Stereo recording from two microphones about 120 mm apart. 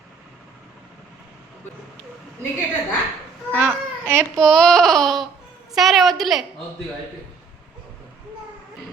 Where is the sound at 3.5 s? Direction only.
10° right (ahead or behind).